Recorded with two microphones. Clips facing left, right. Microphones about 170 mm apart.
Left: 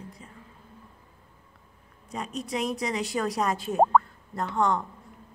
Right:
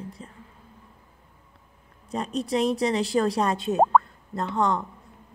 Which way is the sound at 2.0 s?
30° right (ahead or behind).